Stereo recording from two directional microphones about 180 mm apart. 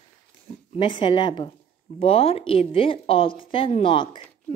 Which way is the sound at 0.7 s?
25° left (ahead or behind).